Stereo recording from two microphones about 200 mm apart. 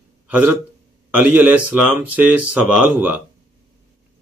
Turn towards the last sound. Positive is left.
turn(degrees=-5)  # may be behind; listen again after turning